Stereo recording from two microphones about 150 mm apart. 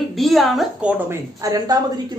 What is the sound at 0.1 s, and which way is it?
Speech, centre (ahead or behind).